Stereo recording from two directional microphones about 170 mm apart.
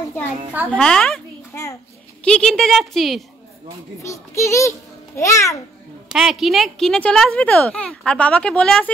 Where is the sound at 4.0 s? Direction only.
15° left (ahead or behind).